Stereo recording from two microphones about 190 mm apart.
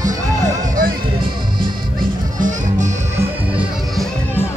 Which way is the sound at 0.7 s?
50° right (ahead or behind).